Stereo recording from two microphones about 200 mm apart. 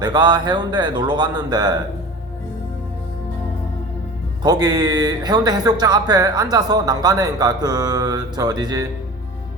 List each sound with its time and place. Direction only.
0.0 s speech: 20° right (ahead or behind)
4.4 s speech: 20° right (ahead or behind)